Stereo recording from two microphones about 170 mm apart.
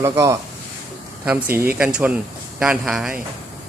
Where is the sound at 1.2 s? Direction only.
5° right (ahead or behind).